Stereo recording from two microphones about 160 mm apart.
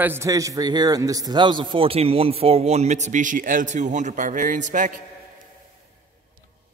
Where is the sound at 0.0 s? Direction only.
15° right (ahead or behind); by 5.0 s 55° right (ahead or behind).